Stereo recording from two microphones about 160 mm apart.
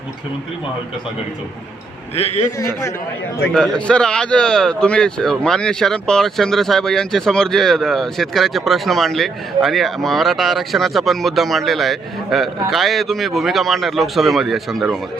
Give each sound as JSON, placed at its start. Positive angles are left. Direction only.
{"t": 2.1, "sound": "a man's voice", "side_deg": 40}
{"t": 3.5, "sound": "a man's voice", "side_deg": 5}